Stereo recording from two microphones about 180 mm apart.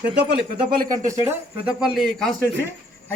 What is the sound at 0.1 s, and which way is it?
Speech, 70° right (ahead or behind).